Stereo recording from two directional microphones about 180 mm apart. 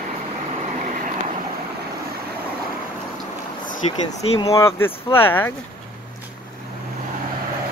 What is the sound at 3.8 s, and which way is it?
Speech, 35° left (ahead or behind).